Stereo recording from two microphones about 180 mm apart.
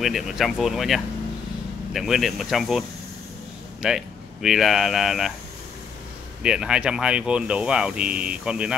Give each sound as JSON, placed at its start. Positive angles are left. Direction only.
{"t": 0.0, "sound": "speech", "side_deg": 0}
{"t": 3.8, "sound": "speech", "side_deg": -5}
{"t": 6.4, "sound": "speech", "side_deg": -5}